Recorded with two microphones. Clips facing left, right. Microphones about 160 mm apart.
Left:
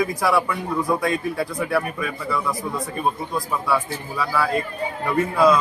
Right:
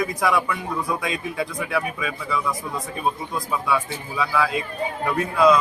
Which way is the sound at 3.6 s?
Centre (ahead or behind).